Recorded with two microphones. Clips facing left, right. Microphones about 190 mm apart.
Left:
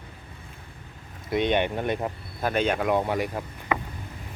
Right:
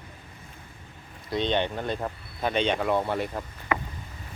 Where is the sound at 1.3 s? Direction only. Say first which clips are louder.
Left 3 dB; 20° left (ahead or behind).